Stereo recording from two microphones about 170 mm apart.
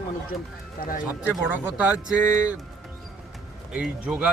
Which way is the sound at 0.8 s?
55° left (ahead or behind).